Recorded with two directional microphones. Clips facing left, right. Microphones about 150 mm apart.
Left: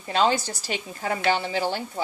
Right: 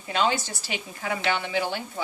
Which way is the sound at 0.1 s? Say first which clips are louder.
Left 3 dB; 40° left (ahead or behind).